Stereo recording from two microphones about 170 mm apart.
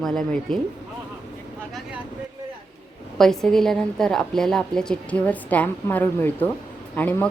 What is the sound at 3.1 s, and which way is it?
A woman's voice, centre (ahead or behind).